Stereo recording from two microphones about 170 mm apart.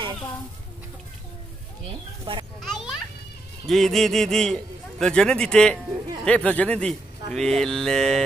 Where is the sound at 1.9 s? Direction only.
30° right (ahead or behind).